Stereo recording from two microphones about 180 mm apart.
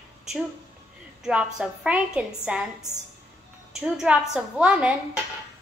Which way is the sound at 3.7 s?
5° right (ahead or behind).